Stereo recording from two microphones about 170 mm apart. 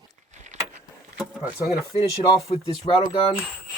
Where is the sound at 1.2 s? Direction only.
Centre (ahead or behind).